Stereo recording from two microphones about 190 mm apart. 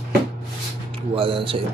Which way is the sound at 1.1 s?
30° right (ahead or behind).